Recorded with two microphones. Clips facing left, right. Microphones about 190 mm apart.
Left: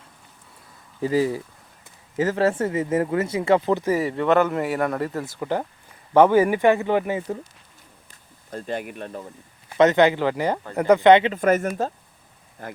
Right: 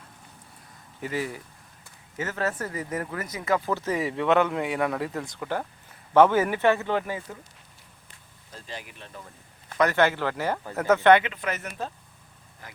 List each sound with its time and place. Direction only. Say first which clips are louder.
1.0 s speech: left 9 dB; 30° left (ahead or behind)
3.8 s speech: left 5 dB; 5° left (ahead or behind)
8.5 s speech: left 12 dB; 55° left (ahead or behind)
9.7 s speech: left 6 dB; 20° left (ahead or behind)
11.3 s speech: left 12 dB; 45° left (ahead or behind)